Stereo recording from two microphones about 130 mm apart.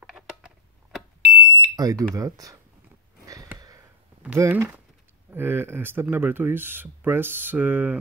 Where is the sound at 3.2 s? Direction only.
25° right (ahead or behind).